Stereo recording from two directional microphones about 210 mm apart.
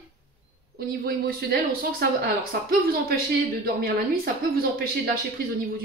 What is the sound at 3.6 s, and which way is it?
Speech, 45° right (ahead or behind).